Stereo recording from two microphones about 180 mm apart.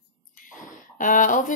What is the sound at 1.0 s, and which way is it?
Speech, 45° left (ahead or behind).